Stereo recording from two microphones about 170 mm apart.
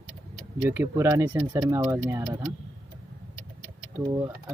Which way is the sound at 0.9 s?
20° right (ahead or behind).